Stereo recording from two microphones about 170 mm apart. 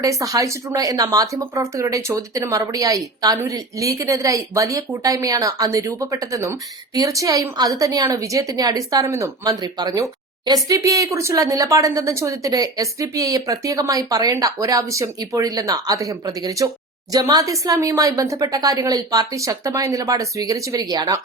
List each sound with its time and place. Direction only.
0.0 s speech: 20° right (ahead or behind)